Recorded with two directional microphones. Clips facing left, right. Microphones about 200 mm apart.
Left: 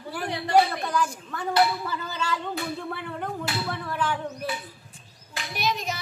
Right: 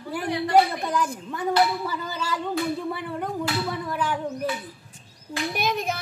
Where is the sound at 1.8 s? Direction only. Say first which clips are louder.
Right 1 dB; 10° right (ahead or behind).